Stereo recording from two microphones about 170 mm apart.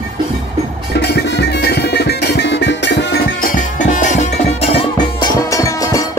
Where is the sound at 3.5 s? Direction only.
45° left (ahead or behind).